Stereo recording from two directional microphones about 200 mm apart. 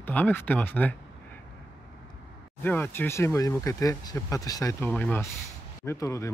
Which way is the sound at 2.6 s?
10° left (ahead or behind).